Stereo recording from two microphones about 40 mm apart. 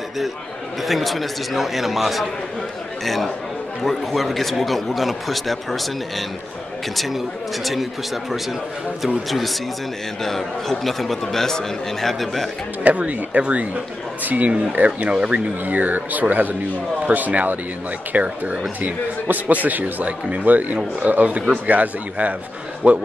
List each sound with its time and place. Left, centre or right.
0.8 s a man's voice: centre
3.8 s a man's voice: centre
7.6 s a man's voice: centre
12.8 s speech: right
14.9 s speech: right
15.6 s speech: right
18.8 s speech: right
21.3 s speech: right